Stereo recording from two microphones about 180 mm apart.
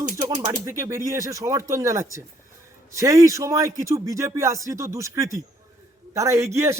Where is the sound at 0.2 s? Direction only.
20° right (ahead or behind).